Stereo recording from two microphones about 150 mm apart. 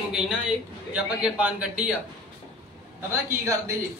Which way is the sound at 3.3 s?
20° right (ahead or behind).